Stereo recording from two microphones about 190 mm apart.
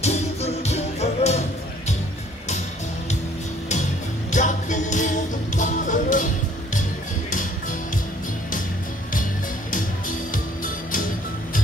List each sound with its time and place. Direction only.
0.0 s music: 35° left (ahead or behind)
4.3 s music: 40° left (ahead or behind)
10.3 s music: 45° left (ahead or behind)